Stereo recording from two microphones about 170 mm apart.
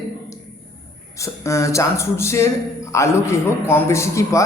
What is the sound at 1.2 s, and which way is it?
A man's voice, 15° left (ahead or behind).